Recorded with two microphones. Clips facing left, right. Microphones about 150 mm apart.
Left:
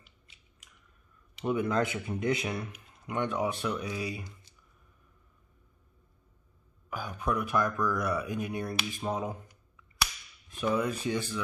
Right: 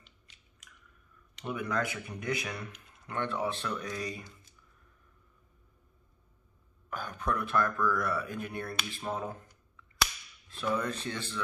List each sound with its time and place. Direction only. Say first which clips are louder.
1.4 s speech: left 5 dB; 25° left (ahead or behind); by 4.3 s 10° left (ahead or behind)
6.9 s speech: left 2 dB; 10° left (ahead or behind)
10.5 s speech: left 3 dB; 15° left (ahead or behind)